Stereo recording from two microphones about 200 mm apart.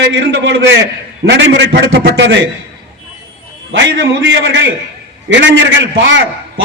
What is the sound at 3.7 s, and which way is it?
A man's voice, 70° right (ahead or behind).